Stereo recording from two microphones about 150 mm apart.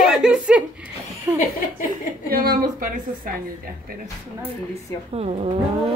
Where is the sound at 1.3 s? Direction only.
15° right (ahead or behind).